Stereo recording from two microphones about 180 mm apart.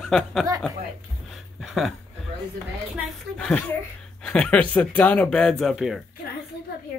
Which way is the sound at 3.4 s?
5° left (ahead or behind).